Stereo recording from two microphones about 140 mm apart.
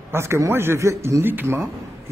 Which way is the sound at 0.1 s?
20° right (ahead or behind).